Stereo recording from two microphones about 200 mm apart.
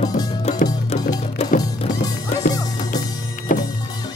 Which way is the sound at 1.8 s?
35° left (ahead or behind).